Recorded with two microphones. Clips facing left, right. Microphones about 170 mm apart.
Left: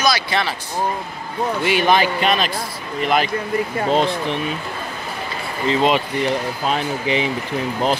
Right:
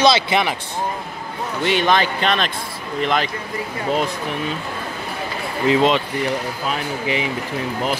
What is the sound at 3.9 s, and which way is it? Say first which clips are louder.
Speech: left 2 dB; 30° left (ahead or behind).